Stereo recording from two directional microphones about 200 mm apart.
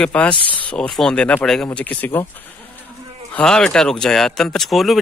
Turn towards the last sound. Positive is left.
turn(degrees=0)  # may be behind; listen again after turning